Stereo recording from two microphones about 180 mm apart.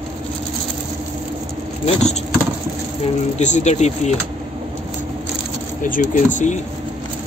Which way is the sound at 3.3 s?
40° left (ahead or behind).